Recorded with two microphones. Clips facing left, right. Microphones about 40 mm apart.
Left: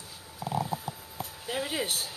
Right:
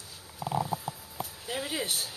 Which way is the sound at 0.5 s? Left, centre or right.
Centre.